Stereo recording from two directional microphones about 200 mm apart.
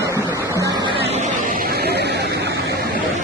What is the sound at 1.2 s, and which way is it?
Vehicle, 40° right (ahead or behind).